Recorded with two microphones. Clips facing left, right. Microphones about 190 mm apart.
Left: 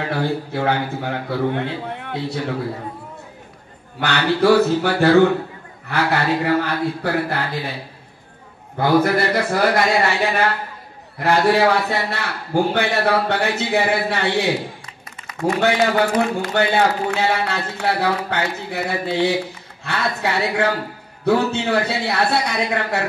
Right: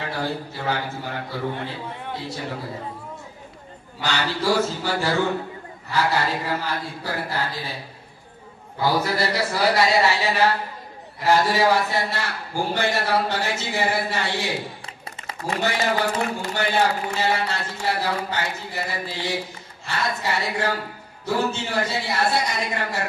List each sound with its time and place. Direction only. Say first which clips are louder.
0.1 s a man's voice: left 6 dB; 60° left (ahead or behind)
4.0 s a man's voice: left 7 dB; 60° left (ahead or behind)
8.7 s a man's voice: left 6 dB; 55° left (ahead or behind)
15.6 s a man's voice: left 5 dB; 60° left (ahead or behind)